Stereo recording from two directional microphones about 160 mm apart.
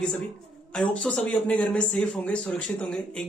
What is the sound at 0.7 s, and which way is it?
Speech, 5° left (ahead or behind).